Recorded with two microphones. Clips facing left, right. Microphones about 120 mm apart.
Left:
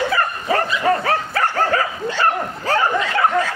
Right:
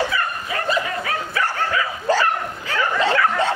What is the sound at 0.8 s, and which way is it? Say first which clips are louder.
Bow-wow: left 8 dB; 40° left (ahead or behind).